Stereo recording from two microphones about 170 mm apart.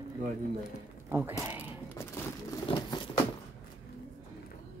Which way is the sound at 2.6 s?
30° left (ahead or behind).